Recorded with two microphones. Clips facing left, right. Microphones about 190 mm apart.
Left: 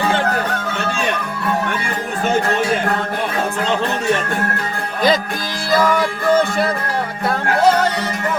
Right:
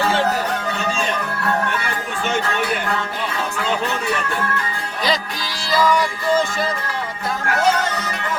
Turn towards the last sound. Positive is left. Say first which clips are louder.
# left 4 dB
turn(degrees=55)  # may be behind; listen again after turning